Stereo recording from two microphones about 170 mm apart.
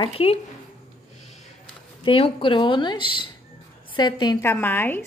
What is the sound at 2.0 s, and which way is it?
Speech, 30° left (ahead or behind).